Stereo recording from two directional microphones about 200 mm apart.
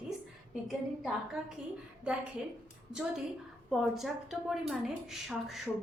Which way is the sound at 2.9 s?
5° right (ahead or behind).